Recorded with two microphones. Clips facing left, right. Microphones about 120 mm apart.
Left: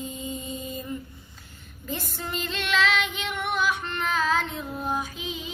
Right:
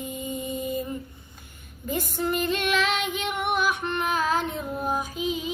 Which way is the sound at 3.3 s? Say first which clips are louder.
Right 1 dB; 10° right (ahead or behind).